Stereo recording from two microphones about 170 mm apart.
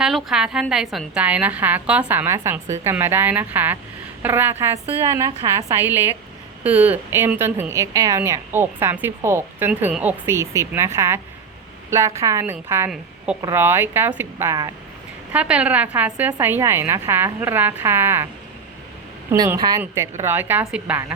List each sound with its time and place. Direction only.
0.0 s speech: centre (ahead or behind); by 14.7 s 20° right (ahead or behind)
15.3 s speech: 5° right (ahead or behind)
19.3 s speech: 15° right (ahead or behind)